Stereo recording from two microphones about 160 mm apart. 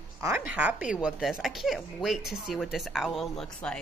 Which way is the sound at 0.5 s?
10° right (ahead or behind).